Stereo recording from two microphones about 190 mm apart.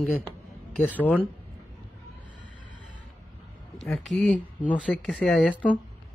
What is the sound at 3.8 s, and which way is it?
Speech, centre (ahead or behind).